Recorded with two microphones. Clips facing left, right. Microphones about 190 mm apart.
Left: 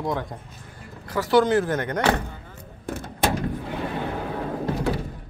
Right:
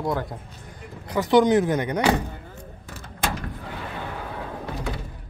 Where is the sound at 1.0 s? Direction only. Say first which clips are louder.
Right 1 dB; 20° right (ahead or behind).